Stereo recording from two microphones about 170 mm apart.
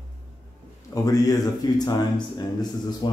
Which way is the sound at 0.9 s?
20° left (ahead or behind).